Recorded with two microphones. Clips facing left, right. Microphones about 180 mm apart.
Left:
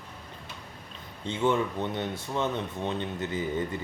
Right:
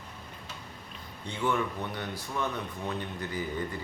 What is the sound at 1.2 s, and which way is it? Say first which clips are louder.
Speech: left 4 dB; 25° left (ahead or behind).